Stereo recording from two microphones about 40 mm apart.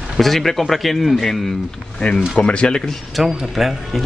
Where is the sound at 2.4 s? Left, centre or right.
Left.